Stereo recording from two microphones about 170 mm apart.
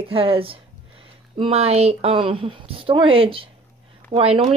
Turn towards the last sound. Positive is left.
turn(degrees=-35)  # may be behind; listen again after turning